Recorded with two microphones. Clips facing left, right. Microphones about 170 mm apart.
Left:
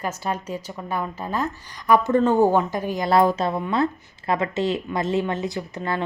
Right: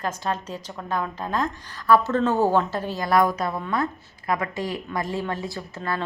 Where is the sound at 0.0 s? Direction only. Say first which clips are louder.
Even; 10° left (ahead or behind).